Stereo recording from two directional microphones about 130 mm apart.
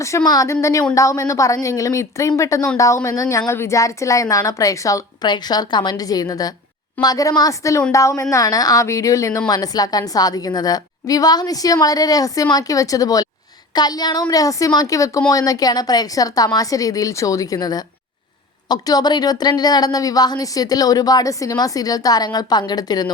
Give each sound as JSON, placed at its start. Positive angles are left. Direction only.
{"t": 0.3, "sound": "a woman's voice", "side_deg": 25}